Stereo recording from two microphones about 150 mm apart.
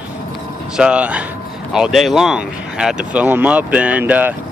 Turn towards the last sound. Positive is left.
turn(degrees=-10)  # may be behind; listen again after turning